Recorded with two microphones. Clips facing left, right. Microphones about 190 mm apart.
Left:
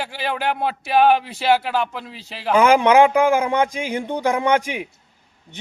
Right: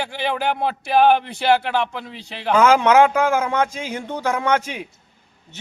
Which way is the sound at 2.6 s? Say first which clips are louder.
Left 1 dB; 15° left (ahead or behind).